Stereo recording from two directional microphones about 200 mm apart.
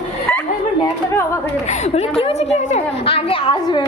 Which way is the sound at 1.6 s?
35° left (ahead or behind).